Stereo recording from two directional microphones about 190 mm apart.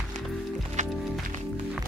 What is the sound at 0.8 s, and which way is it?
Music, 40° right (ahead or behind).